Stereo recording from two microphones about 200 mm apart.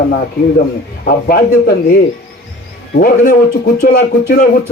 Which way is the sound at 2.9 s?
45° left (ahead or behind).